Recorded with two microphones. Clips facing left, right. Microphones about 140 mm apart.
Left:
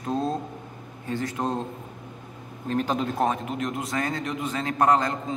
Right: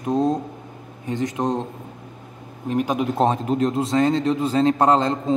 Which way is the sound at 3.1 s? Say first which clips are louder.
Right 6 dB; 30° right (ahead or behind).